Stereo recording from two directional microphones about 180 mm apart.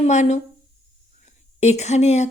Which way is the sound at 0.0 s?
40° left (ahead or behind).